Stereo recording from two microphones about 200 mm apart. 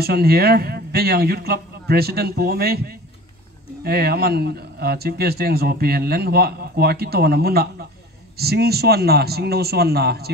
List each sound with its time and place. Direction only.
0.0 s a man's voice: 50° right (ahead or behind)